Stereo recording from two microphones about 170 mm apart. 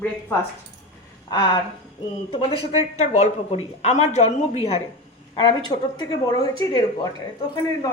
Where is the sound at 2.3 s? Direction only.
35° left (ahead or behind).